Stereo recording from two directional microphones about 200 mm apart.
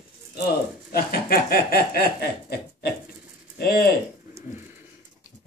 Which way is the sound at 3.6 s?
50° left (ahead or behind).